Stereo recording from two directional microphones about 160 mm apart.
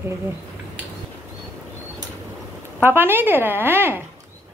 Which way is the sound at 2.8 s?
15° right (ahead or behind).